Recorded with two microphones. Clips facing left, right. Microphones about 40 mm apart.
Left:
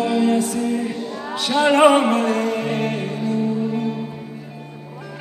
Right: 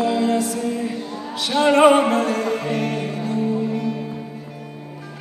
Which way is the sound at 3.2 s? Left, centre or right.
Right.